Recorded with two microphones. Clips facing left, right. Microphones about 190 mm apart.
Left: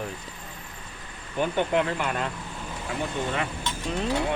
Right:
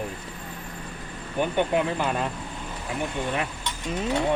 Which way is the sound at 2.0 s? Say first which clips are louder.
Right 2 dB; 25° right (ahead or behind).